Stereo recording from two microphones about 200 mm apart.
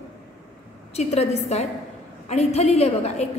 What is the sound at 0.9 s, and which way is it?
A woman's voice, 30° left (ahead or behind).